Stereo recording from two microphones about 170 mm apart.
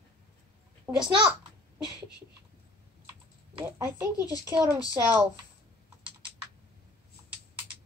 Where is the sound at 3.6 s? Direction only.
15° right (ahead or behind).